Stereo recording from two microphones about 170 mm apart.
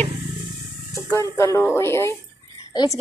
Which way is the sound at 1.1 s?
15° left (ahead or behind).